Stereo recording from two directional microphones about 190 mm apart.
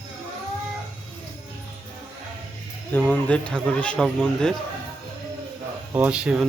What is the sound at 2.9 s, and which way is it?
Speech, 10° left (ahead or behind).